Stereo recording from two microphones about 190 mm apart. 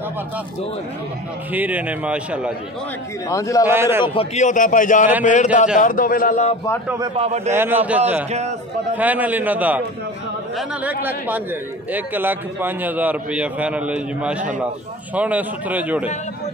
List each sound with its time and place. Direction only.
1.5 s a man's voice: 10° right (ahead or behind)
3.3 s a man's voice: 15° left (ahead or behind)
3.6 s a man's voice: 10° right (ahead or behind)
4.0 s a man's voice: 30° left (ahead or behind)
7.0 s a man's voice: 35° right (ahead or behind)
7.5 s a man's voice: 10° right (ahead or behind)
8.3 s a man's voice: 35° right (ahead or behind)
8.9 s a man's voice: 10° right (ahead or behind)